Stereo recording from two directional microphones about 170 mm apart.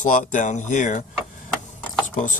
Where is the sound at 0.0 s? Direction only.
50° left (ahead or behind).